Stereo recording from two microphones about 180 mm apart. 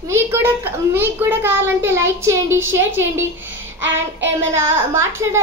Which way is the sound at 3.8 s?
90° right.